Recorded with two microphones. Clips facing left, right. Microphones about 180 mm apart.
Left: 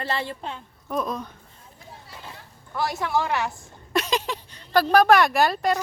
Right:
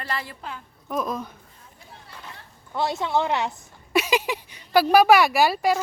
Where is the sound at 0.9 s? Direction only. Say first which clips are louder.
Even; centre (ahead or behind).